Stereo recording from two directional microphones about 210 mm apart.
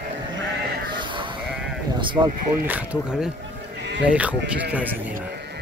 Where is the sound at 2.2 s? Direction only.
15° right (ahead or behind).